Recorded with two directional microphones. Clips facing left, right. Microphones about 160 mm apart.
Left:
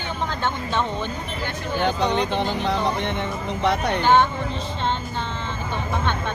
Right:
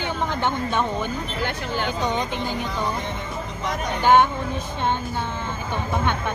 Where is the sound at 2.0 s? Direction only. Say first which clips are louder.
Left 3 dB; 65° left (ahead or behind).